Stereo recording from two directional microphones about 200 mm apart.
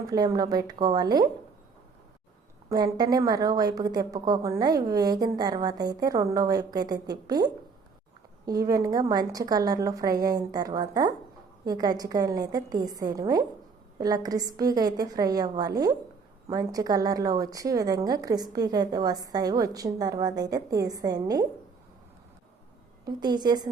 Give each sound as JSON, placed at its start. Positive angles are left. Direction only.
{"t": 0.1, "sound": "a woman's voice", "side_deg": -20}
{"t": 2.6, "sound": "a woman's voice", "side_deg": -20}
{"t": 23.0, "sound": "a woman's voice", "side_deg": -20}